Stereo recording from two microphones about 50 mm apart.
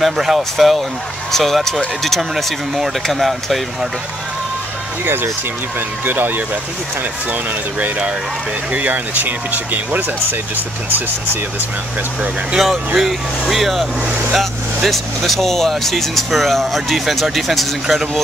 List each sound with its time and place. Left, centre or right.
0.0 s speech: centre
5.0 s speech: right
8.7 s speech: right
12.5 s speech: centre